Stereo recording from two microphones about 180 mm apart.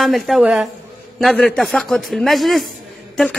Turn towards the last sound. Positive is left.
turn(degrees=5)  # may be behind; listen again after turning